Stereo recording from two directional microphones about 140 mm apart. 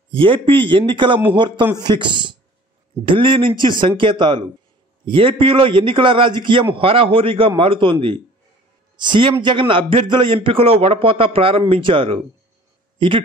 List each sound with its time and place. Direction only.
0.1 s a man's voice: 40° right (ahead or behind)